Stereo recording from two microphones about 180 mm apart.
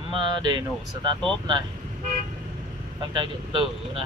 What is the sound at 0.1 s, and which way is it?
Speech, 25° right (ahead or behind).